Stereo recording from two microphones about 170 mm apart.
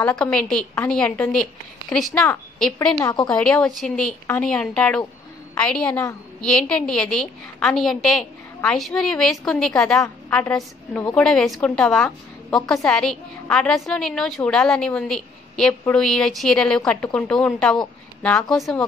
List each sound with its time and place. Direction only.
0.0 s a woman's voice: 5° left (ahead or behind)
3.0 s a woman's voice: 20° left (ahead or behind)
3.3 s a woman's voice: 5° left (ahead or behind)
10.5 s a woman's voice: 5° left (ahead or behind)